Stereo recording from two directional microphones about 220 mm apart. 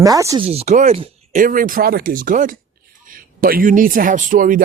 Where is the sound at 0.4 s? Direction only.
30° right (ahead or behind).